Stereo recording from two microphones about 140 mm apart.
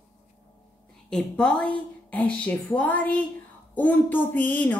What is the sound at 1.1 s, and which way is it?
Speech, 5° left (ahead or behind).